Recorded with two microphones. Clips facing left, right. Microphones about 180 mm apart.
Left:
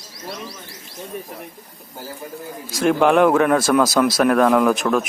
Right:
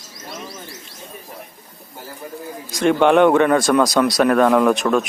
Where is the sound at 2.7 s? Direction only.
Centre (ahead or behind).